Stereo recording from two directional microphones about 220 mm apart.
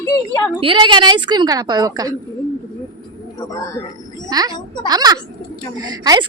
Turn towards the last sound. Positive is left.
turn(degrees=-15)  # may be behind; listen again after turning